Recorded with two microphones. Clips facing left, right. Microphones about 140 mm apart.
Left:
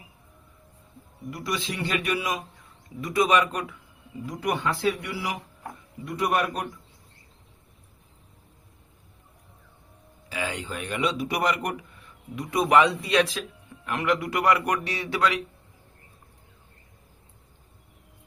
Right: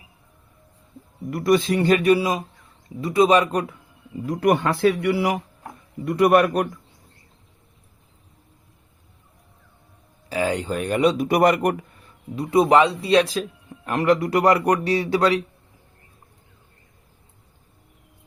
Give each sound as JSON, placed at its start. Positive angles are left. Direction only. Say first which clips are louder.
{"t": 1.3, "sound": "a man's voice", "louder": "right 12 dB", "side_deg": -55}
{"t": 4.3, "sound": "speech", "louder": "right 8 dB", "side_deg": -55}
{"t": 10.2, "sound": "speech", "louder": "right 9 dB", "side_deg": -40}